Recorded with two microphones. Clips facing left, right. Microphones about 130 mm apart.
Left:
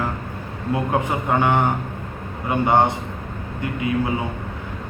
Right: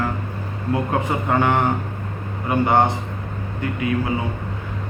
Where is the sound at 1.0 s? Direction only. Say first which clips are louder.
Even; 20° left (ahead or behind).